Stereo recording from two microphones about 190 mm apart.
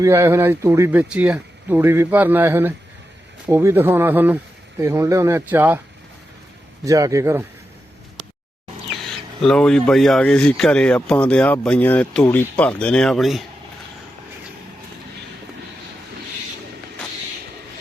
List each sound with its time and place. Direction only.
0.0 s speech: 15° right (ahead or behind)
6.8 s speech: 15° right (ahead or behind)
8.9 s speech: centre (ahead or behind)